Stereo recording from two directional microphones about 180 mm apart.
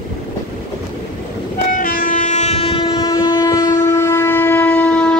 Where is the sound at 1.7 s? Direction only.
50° left (ahead or behind); by 3.1 s 30° left (ahead or behind).